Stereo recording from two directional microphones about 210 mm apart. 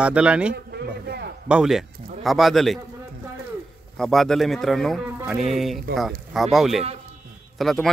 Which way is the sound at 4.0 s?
Centre (ahead or behind).